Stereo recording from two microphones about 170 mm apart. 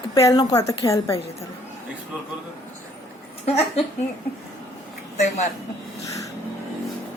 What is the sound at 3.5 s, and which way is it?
Speech, 35° left (ahead or behind).